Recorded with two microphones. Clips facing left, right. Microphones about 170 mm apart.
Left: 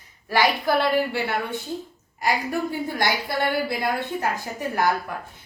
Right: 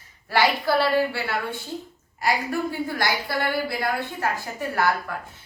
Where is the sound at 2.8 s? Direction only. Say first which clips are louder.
Left 1 dB; 20° left (ahead or behind).